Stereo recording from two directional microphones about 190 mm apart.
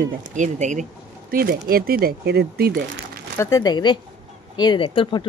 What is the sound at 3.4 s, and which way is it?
Speech, 20° left (ahead or behind).